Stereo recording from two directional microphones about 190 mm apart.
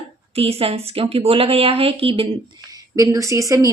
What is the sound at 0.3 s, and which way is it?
Speech, 30° right (ahead or behind).